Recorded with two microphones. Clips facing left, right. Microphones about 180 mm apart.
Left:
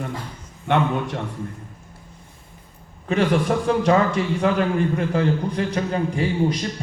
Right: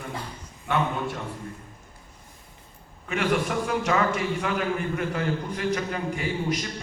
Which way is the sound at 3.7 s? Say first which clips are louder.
Left 7 dB; 35° left (ahead or behind).